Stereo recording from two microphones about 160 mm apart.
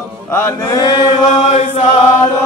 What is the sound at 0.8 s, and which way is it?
Chant, 30° left (ahead or behind).